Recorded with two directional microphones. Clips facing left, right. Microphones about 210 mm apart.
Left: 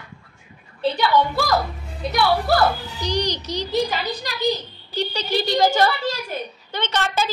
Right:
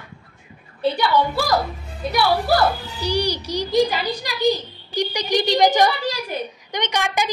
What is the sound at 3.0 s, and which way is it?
A child's voice, 10° right (ahead or behind).